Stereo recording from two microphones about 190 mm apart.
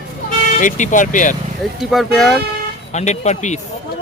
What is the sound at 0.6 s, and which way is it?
Speech, 40° left (ahead or behind).